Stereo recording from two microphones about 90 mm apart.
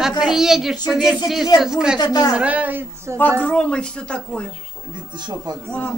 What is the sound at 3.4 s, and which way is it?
Speech, 15° left (ahead or behind).